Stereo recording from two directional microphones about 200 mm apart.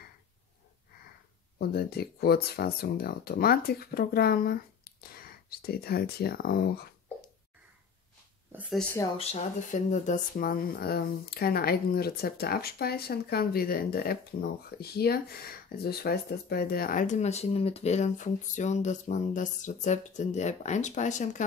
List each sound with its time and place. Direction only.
1.6 s speech: 50° left (ahead or behind)
8.5 s speech: 10° right (ahead or behind)
9.2 s speech: 35° left (ahead or behind)